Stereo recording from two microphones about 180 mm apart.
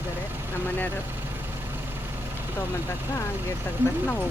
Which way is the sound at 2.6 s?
15° left (ahead or behind).